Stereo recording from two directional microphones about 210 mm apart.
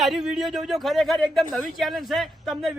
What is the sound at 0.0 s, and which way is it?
A man's voice, centre (ahead or behind).